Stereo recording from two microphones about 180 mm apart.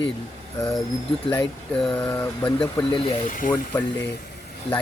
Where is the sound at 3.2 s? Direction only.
45° left (ahead or behind).